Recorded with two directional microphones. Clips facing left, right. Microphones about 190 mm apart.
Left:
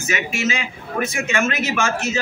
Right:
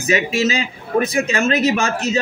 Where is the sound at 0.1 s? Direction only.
35° right (ahead or behind).